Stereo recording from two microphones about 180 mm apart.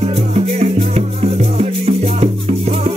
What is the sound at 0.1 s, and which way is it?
Music, 35° right (ahead or behind).